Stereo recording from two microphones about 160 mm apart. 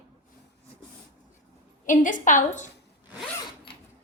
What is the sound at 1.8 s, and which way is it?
Speech, 55° left (ahead or behind).